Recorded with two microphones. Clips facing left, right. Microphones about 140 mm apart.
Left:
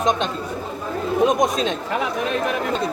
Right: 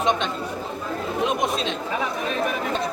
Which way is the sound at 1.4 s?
45° left (ahead or behind).